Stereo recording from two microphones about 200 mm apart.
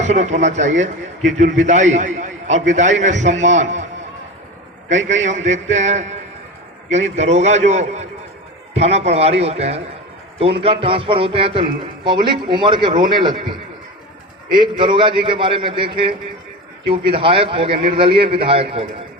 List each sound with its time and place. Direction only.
0.0 s speech: 35° right (ahead or behind)
4.9 s a man's voice: 35° right (ahead or behind)
14.6 s a man's voice: 25° right (ahead or behind)